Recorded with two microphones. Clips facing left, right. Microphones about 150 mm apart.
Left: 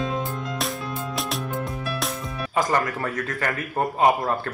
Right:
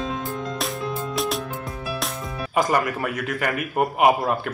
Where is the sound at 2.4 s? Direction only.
20° right (ahead or behind).